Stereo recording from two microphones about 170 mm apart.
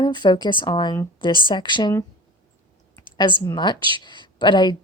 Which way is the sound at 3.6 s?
25° left (ahead or behind).